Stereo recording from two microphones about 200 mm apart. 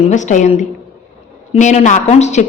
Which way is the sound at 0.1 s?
35° left (ahead or behind).